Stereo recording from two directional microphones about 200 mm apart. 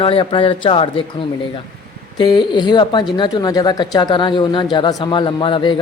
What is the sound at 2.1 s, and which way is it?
Speech, 20° left (ahead or behind).